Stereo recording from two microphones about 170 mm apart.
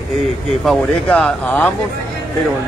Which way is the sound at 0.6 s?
Centre (ahead or behind).